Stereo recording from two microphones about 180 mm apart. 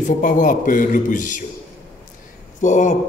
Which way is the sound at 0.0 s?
45° left (ahead or behind).